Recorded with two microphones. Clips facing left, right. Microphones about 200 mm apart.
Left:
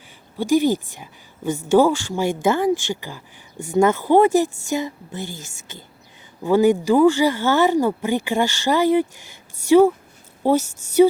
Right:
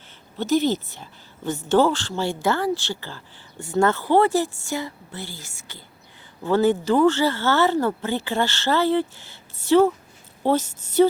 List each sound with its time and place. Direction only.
0.3 s a woman's voice: 10° left (ahead or behind)